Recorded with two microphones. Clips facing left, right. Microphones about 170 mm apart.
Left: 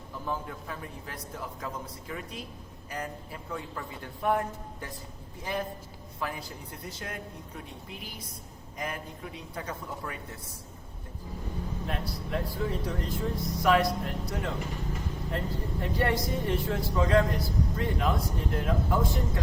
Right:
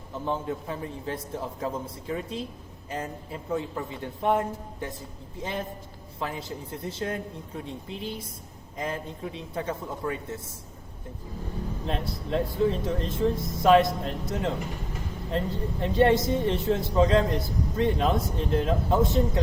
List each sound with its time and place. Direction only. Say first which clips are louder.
0.1 s speech: right 6 dB; 25° right (ahead or behind)
11.9 s speech: right 6 dB; 25° right (ahead or behind)